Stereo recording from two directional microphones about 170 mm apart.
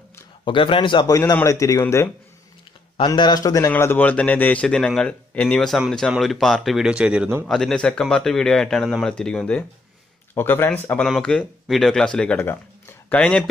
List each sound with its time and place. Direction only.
0.5 s a man's voice: 30° left (ahead or behind); by 13.5 s 5° left (ahead or behind)